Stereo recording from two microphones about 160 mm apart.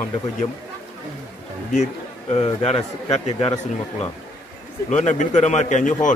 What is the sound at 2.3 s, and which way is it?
A man's voice, 40° left (ahead or behind).